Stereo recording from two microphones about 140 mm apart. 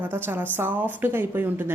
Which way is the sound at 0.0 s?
15° right (ahead or behind).